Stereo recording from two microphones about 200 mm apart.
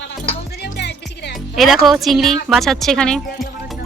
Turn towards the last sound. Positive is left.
turn(degrees=5)  # may be behind; listen again after turning